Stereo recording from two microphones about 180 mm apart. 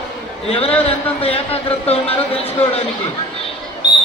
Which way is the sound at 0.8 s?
35° left (ahead or behind).